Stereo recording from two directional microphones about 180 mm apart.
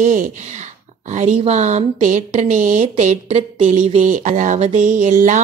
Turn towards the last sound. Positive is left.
turn(degrees=-45)  # may be behind; listen again after turning